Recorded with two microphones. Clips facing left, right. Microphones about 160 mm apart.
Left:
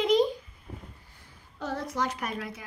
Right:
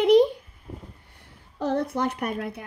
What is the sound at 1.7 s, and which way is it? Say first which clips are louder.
Speech: right 4 dB; 60° right (ahead or behind).